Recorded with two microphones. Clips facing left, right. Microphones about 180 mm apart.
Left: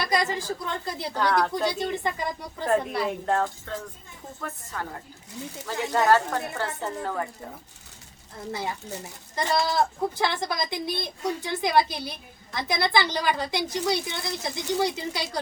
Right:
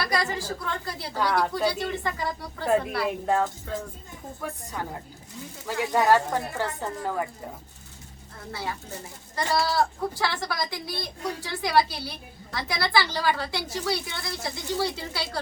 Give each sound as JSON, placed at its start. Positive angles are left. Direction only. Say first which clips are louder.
{"t": 0.0, "sound": "a woman's voice", "louder": "left 2 dB", "side_deg": 20}
{"t": 1.1, "sound": "speech", "louder": "left 1 dB", "side_deg": -5}
{"t": 1.6, "sound": "speech", "louder": "even", "side_deg": 20}
{"t": 3.2, "sound": "a woman's voice", "louder": "right 1 dB", "side_deg": -5}
{"t": 9.3, "sound": "speech", "louder": "even", "side_deg": 20}